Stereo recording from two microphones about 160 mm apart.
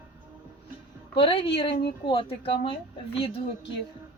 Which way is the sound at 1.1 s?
35° left (ahead or behind).